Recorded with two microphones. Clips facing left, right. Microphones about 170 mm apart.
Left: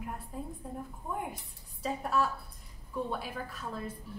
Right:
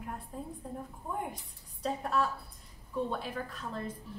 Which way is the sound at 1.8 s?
5° left (ahead or behind).